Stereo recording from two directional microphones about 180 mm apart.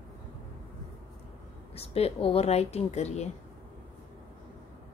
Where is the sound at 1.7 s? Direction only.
35° left (ahead or behind).